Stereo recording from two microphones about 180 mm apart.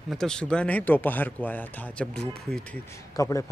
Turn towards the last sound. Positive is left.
turn(degrees=20)  # may be behind; listen again after turning